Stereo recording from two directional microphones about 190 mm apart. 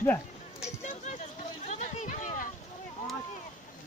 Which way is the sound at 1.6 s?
35° left (ahead or behind).